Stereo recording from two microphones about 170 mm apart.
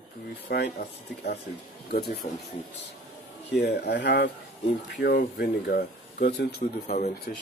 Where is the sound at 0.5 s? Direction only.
80° left.